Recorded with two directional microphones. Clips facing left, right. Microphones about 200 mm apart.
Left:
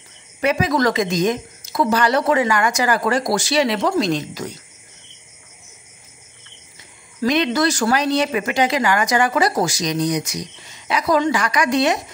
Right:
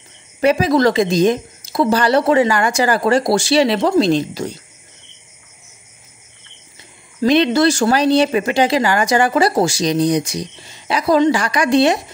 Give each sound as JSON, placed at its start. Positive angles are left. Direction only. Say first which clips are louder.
{"t": 0.4, "sound": "speech", "louder": "right 5 dB", "side_deg": -30}
{"t": 7.2, "sound": "speech", "louder": "right 5 dB", "side_deg": -30}